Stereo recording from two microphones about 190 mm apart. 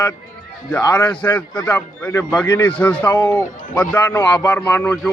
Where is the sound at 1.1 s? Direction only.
5° left (ahead or behind).